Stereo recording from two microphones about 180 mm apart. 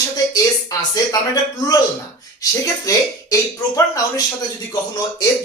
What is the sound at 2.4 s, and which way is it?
Speech, 20° left (ahead or behind).